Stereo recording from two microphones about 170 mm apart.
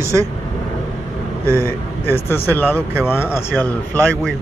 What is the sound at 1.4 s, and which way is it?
Speech, 15° right (ahead or behind).